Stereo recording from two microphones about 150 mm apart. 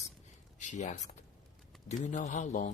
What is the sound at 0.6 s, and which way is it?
Speech, 50° left (ahead or behind).